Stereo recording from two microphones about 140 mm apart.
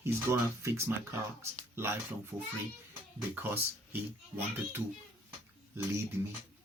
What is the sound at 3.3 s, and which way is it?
Speech, 15° right (ahead or behind).